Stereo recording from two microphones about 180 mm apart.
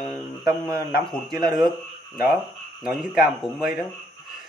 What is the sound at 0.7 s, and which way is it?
Speech, 60° left (ahead or behind).